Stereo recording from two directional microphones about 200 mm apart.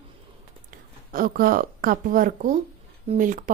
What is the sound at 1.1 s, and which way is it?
Speech, 45° right (ahead or behind).